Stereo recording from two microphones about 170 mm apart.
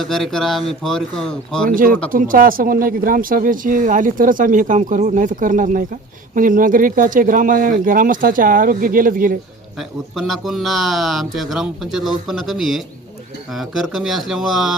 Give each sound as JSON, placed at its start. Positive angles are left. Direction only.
{"t": 0.0, "sound": "speech", "side_deg": 0}
{"t": 1.7, "sound": "speech", "side_deg": -55}
{"t": 10.2, "sound": "speech", "side_deg": 0}